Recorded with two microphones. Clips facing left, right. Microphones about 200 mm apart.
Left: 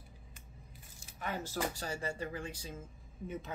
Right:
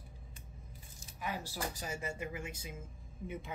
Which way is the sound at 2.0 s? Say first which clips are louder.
Left 2 dB; 10° right (ahead or behind).